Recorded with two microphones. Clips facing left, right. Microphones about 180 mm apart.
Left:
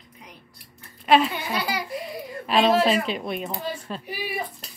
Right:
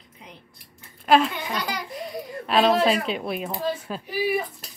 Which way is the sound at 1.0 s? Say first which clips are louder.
Even; centre (ahead or behind).